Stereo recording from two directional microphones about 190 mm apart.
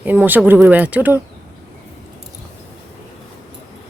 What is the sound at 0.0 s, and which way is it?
Speech, 10° right (ahead or behind).